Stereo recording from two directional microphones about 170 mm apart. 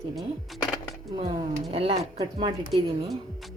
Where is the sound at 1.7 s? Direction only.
35° right (ahead or behind).